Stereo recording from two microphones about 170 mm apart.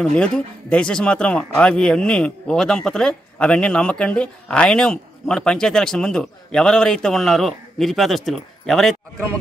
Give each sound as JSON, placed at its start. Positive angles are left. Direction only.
{"t": 0.0, "sound": "speech", "side_deg": 5}